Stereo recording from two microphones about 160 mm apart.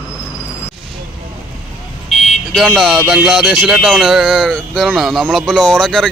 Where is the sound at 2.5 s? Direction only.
Centre (ahead or behind).